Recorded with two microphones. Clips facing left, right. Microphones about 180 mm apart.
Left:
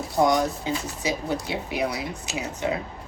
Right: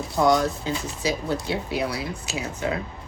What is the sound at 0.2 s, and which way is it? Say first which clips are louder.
Speech: right 1 dB; 15° left (ahead or behind).